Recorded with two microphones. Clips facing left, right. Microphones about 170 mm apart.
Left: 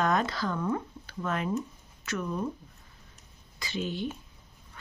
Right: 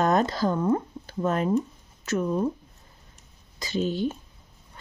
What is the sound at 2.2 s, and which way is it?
Speech, 25° right (ahead or behind).